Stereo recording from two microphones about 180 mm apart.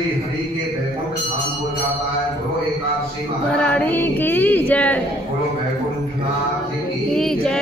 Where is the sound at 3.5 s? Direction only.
5° left (ahead or behind).